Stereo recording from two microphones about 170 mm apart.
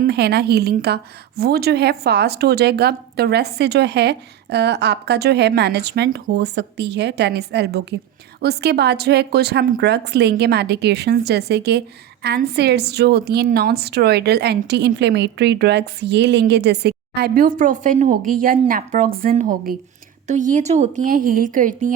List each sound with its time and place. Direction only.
0.0 s speech: 70° right (ahead or behind)
17.6 s a woman's voice: 50° right (ahead or behind)